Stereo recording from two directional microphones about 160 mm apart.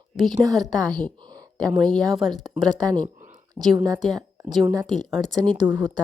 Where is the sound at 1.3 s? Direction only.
25° right (ahead or behind).